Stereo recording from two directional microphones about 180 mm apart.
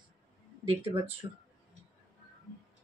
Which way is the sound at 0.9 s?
30° right (ahead or behind).